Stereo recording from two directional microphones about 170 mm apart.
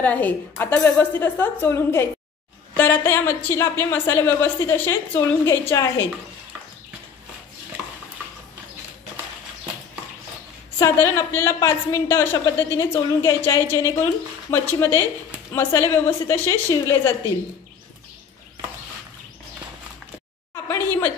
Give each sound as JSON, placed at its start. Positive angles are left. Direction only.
{"t": 0.0, "sound": "a woman's voice", "side_deg": 10}
{"t": 10.8, "sound": "a woman's voice", "side_deg": 15}
{"t": 20.6, "sound": "a sound", "side_deg": 10}